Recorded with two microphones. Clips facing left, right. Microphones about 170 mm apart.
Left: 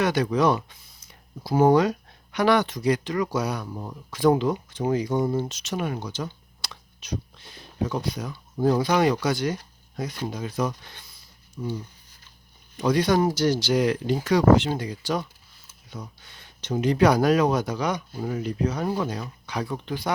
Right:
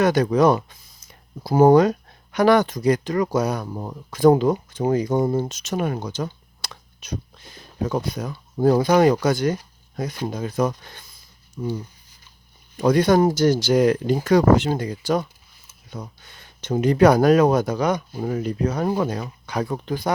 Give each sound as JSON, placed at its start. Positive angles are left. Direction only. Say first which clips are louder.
{"t": 0.0, "sound": "speech", "louder": "right 5 dB", "side_deg": -45}
{"t": 12.8, "sound": "speech", "louder": "right 5 dB", "side_deg": -50}